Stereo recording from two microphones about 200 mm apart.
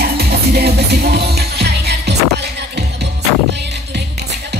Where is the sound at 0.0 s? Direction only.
50° right (ahead or behind).